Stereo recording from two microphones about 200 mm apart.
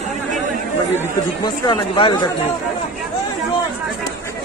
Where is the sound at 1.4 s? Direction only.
20° left (ahead or behind).